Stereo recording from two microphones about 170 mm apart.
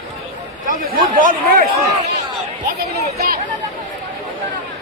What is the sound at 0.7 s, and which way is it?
Speech, 55° right (ahead or behind).